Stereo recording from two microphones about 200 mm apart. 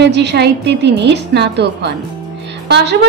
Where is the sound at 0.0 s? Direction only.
60° right (ahead or behind).